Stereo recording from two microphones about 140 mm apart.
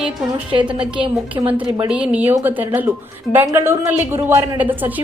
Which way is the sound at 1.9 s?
5° right (ahead or behind).